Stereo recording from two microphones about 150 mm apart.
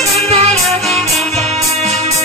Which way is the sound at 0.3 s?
45° right (ahead or behind).